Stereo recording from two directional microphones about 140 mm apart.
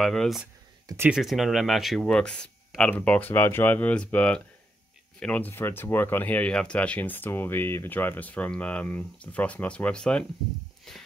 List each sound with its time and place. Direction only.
0.0 s speech: centre (ahead or behind)
0.8 s speech: 15° right (ahead or behind)
1.1 s speech: centre (ahead or behind)